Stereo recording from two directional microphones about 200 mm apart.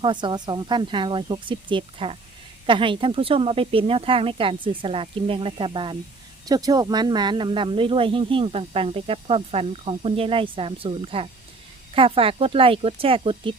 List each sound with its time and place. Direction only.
0.0 s speech: 25° right (ahead or behind)